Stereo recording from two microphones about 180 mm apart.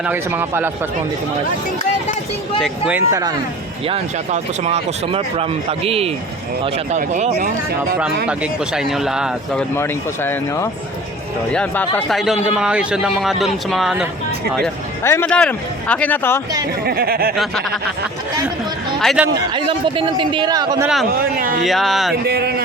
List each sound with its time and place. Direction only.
0.0 s speech: 10° right (ahead or behind)
2.6 s speech: 5° right (ahead or behind)
3.8 s speech: 35° right (ahead or behind)
8.3 s speech: 5° right (ahead or behind)
9.7 s speech: 15° left (ahead or behind); by 14.1 s 5° right (ahead or behind)
15.0 s speech: 10° left (ahead or behind)
16.8 s speech: 60° right (ahead or behind)
17.3 s speech: centre (ahead or behind)
19.0 s speech: 5° right (ahead or behind)
19.3 s a man's voice: 25° right (ahead or behind)
20.8 s speech: centre (ahead or behind)
21.1 s a man's voice: 55° right (ahead or behind)
21.6 s speech: centre (ahead or behind)
22.3 s speech: 65° right (ahead or behind)